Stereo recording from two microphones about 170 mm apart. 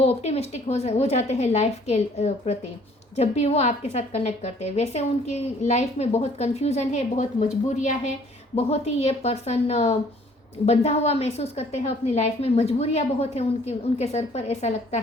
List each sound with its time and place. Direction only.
0.0 s a woman's voice: 40° left (ahead or behind)